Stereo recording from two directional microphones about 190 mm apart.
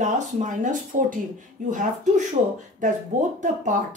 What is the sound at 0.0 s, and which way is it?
Speech, 40° right (ahead or behind).